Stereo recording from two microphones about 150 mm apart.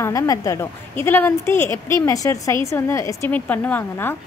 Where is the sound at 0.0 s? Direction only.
20° left (ahead or behind).